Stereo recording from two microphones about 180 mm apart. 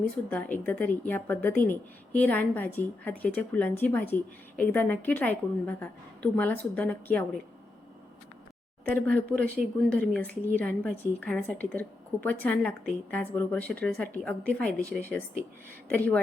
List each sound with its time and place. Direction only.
0.3 s a woman's voice: 10° left (ahead or behind)
8.8 s speech: 10° left (ahead or behind)
9.3 s speech: 55° right (ahead or behind)
9.9 s a woman's voice: 5° left (ahead or behind)